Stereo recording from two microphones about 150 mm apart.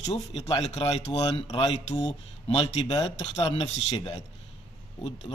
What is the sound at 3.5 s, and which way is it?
Speech, 45° left (ahead or behind).